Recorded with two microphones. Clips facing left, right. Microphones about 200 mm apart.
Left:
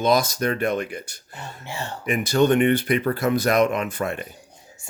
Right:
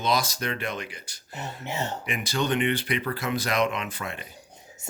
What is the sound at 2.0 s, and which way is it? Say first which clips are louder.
Speech: left 11 dB; 45° left (ahead or behind).